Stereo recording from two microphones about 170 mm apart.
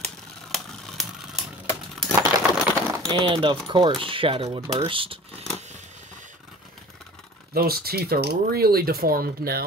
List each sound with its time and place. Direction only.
0.0 s a sound: centre (ahead or behind)
3.1 s speech: 30° right (ahead or behind)
7.5 s speech: 65° right (ahead or behind)